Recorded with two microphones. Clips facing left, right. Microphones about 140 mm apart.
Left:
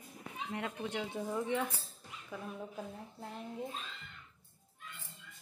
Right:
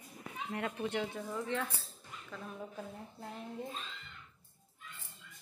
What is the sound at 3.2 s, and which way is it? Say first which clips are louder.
Speech: even; centre (ahead or behind).